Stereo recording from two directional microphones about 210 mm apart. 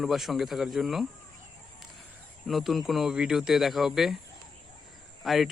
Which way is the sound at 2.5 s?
Centre (ahead or behind).